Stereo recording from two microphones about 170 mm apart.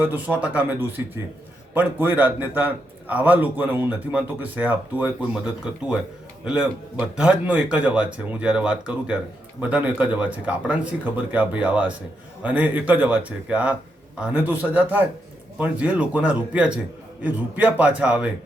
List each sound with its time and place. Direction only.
0.0 s a man's voice: 10° right (ahead or behind)